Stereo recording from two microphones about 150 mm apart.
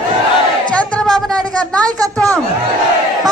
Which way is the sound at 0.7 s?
10° left (ahead or behind).